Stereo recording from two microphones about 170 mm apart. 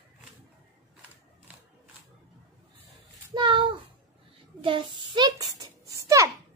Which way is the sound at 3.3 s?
25° right (ahead or behind).